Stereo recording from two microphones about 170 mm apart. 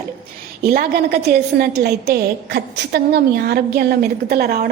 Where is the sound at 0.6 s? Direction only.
65° right (ahead or behind).